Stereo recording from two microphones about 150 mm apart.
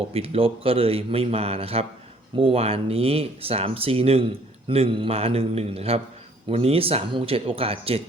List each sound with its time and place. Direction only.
0.1 s speech: 40° right (ahead or behind)